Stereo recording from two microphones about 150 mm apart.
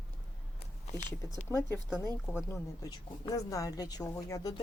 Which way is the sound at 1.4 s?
15° left (ahead or behind).